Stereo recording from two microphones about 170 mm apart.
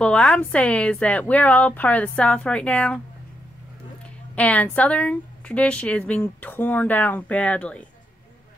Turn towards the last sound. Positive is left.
turn(degrees=5)  # may be behind; listen again after turning